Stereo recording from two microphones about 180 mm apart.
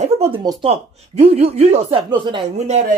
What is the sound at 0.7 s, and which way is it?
Speech, 35° right (ahead or behind).